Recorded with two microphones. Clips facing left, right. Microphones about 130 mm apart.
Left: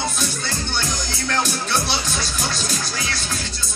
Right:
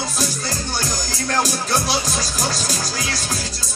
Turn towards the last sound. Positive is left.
turn(degrees=-40)  # may be behind; listen again after turning